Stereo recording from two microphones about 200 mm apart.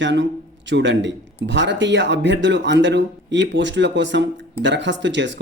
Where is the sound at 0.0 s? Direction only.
65° right (ahead or behind).